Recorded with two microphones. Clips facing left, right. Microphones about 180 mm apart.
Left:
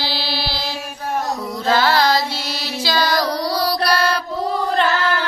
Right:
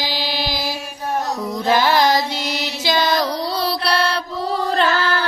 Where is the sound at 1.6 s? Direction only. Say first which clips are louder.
Even; 15° right (ahead or behind).